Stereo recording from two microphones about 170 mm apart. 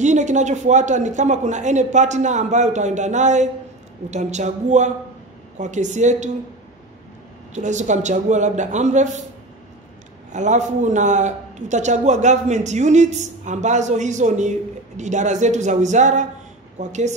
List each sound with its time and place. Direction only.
0.0 s a man's voice: 45° right (ahead or behind)
7.5 s a man's voice: 45° right (ahead or behind)
10.3 s a man's voice: 45° right (ahead or behind)